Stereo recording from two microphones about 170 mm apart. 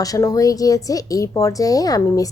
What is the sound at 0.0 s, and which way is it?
A woman's voice, 20° left (ahead or behind).